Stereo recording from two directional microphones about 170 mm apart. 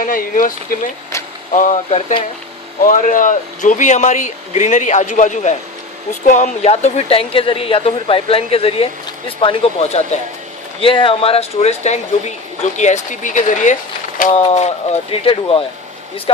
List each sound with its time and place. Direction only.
0.0 s speech: 55° left (ahead or behind)
1.5 s speech: 45° left (ahead or behind)
14.3 s speech: 30° left (ahead or behind)